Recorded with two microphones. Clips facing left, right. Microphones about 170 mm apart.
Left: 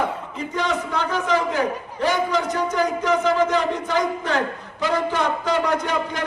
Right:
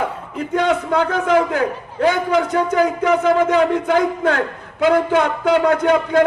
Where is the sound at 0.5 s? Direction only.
60° right (ahead or behind).